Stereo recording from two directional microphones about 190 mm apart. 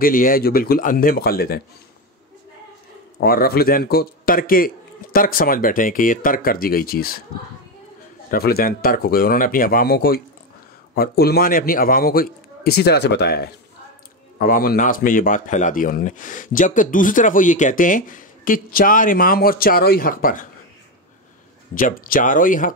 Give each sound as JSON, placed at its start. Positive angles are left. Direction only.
{"t": 0.0, "sound": "speech", "side_deg": 45}
{"t": 3.2, "sound": "speech", "side_deg": 50}
{"t": 8.3, "sound": "speech", "side_deg": 55}
{"t": 21.7, "sound": "speech", "side_deg": 45}